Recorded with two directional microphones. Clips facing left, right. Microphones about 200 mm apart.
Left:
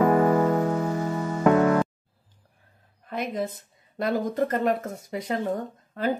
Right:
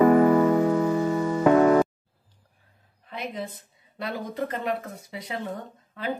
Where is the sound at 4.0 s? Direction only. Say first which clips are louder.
Left 6 dB; 45° left (ahead or behind).